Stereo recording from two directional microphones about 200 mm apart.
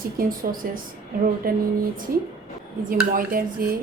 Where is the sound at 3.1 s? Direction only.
45° right (ahead or behind).